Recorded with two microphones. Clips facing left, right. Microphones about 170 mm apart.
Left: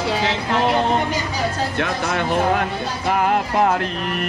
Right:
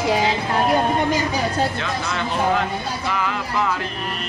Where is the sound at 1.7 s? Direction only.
55° left (ahead or behind).